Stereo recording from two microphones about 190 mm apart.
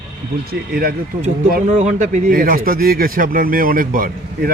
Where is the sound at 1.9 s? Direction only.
40° right (ahead or behind).